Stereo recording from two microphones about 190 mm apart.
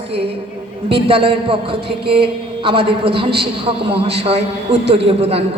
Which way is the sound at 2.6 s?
30° right (ahead or behind).